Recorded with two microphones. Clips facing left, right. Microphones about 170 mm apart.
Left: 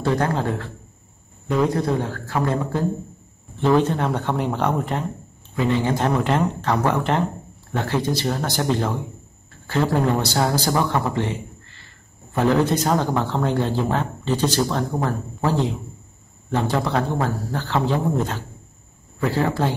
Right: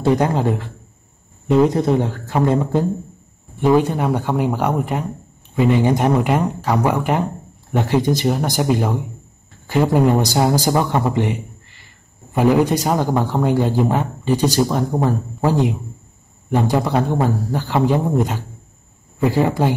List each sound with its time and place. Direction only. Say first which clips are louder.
0.0 s a man's voice: right 5 dB; 15° right (ahead or behind)